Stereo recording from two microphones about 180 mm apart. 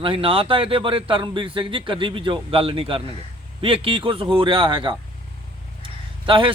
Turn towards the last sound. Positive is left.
turn(degrees=-30)  # may be behind; listen again after turning